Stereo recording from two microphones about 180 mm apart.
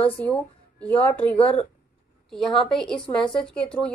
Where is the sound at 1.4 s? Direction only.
30° left (ahead or behind).